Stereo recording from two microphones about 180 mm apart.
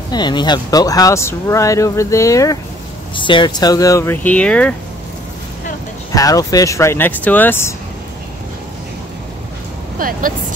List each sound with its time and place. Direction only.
0.1 s speech: 25° left (ahead or behind); by 4.7 s 5° left (ahead or behind)
6.1 s speech: 20° left (ahead or behind)
9.9 s speech: 50° right (ahead or behind)